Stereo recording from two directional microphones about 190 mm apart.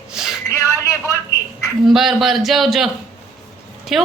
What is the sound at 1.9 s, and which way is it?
A woman's voice, centre (ahead or behind).